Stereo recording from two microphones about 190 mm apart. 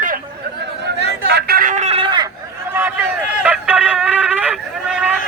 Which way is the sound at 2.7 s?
10° right (ahead or behind).